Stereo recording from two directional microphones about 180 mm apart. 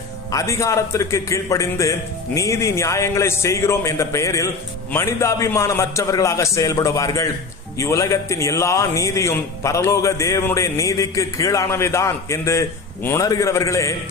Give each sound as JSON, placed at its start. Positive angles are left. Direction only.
{"t": 0.3, "sound": "a man's voice", "side_deg": 15}